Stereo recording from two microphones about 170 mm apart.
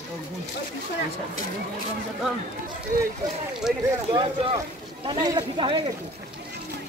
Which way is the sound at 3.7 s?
Centre (ahead or behind).